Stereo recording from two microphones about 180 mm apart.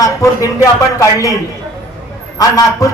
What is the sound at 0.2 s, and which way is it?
Speech, 15° left (ahead or behind).